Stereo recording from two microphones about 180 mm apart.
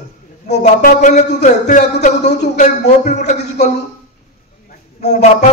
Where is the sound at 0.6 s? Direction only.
45° left (ahead or behind).